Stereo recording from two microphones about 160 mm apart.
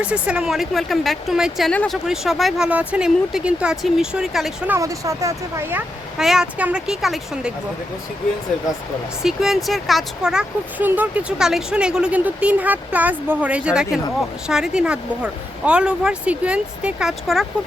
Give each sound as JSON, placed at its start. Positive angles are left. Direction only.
{"t": 0.0, "sound": "speech", "side_deg": -5}
{"t": 4.7, "sound": "speech", "side_deg": -20}
{"t": 6.1, "sound": "speech", "side_deg": -5}
{"t": 9.2, "sound": "speech", "side_deg": 0}